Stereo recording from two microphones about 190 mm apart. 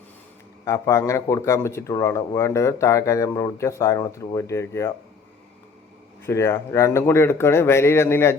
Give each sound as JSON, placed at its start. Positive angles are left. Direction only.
{"t": 0.6, "sound": "speech", "side_deg": 15}
{"t": 6.2, "sound": "speech", "side_deg": 15}